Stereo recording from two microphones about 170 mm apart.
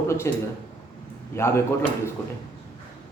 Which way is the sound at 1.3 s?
15° left (ahead or behind).